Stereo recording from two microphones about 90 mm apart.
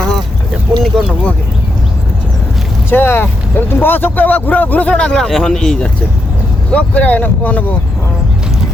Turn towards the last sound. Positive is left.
turn(degrees=15)  # may be behind; listen again after turning